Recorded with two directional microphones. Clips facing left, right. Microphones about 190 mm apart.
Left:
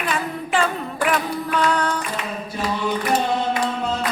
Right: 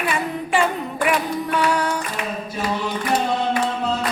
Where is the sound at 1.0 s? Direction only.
10° right (ahead or behind).